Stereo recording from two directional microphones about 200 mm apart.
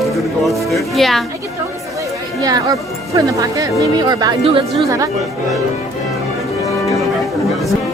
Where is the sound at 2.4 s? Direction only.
20° right (ahead or behind).